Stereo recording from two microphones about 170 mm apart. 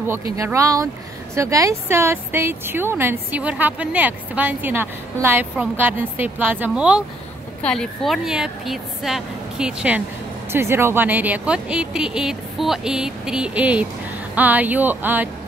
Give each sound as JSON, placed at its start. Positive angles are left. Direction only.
{"t": 0.4, "sound": "a woman's voice", "side_deg": -20}